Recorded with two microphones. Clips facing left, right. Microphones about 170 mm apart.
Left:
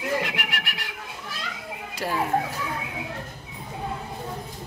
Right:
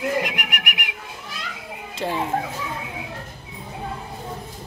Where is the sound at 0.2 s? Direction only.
15° right (ahead or behind).